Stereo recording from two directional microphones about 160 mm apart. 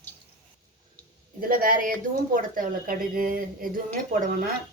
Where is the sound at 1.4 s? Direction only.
60° right (ahead or behind).